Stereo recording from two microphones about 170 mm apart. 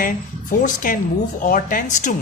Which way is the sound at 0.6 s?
55° left (ahead or behind).